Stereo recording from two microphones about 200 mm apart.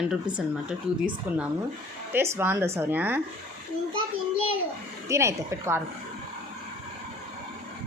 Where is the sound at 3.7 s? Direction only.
40° left (ahead or behind).